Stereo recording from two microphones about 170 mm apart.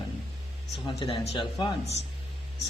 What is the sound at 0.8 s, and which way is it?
Speech, 30° left (ahead or behind).